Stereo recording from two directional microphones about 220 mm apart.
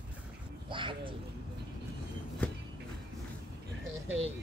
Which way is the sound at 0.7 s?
25° right (ahead or behind).